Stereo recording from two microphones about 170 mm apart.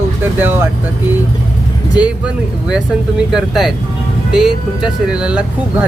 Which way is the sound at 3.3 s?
Centre (ahead or behind).